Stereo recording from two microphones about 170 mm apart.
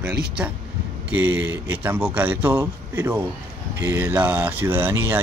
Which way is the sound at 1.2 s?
10° right (ahead or behind).